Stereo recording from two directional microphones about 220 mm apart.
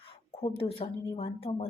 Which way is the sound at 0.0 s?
25° left (ahead or behind).